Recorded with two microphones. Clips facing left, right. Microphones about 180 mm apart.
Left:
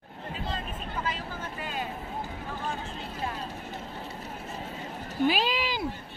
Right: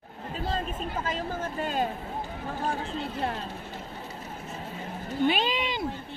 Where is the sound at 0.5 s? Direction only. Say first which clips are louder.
Right 7 dB; 45° right (ahead or behind).